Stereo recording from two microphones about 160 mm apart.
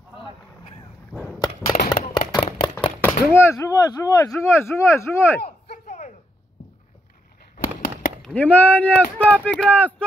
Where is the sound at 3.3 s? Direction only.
15° left (ahead or behind).